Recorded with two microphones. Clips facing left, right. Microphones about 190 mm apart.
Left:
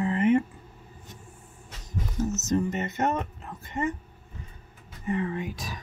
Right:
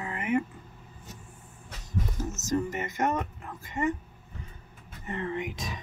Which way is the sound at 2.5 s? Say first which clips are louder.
Left 1 dB; 25° left (ahead or behind).